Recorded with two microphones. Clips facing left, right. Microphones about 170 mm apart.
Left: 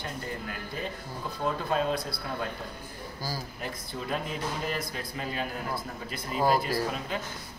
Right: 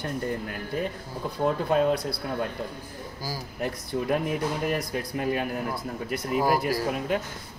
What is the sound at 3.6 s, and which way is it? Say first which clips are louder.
Speech: right 12 dB; 65° right (ahead or behind).